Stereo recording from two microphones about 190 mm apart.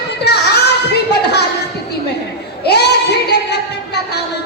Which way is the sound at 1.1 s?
60° left (ahead or behind).